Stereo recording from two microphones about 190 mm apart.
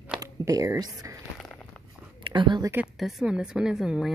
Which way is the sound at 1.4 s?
Centre (ahead or behind).